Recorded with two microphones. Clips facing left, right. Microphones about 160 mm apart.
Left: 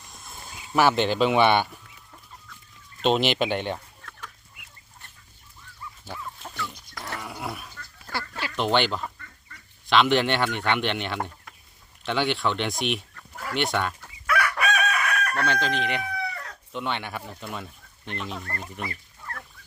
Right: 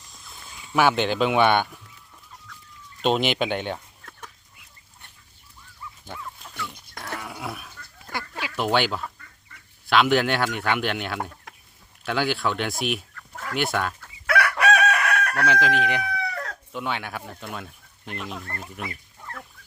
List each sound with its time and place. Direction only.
0.0 s a sound: 50° left (ahead or behind)
0.7 s speech: centre (ahead or behind)
3.0 s speech: centre (ahead or behind)
7.0 s a sound: centre (ahead or behind)
8.0 s duck: 15° right (ahead or behind)
9.8 s speech: 5° right (ahead or behind)
14.3 s chicken: 90° right
15.4 s speech: 5° right (ahead or behind)
16.1 s chicken: 80° right
16.7 s speech: centre (ahead or behind)
18.9 s fowl: 15° right (ahead or behind)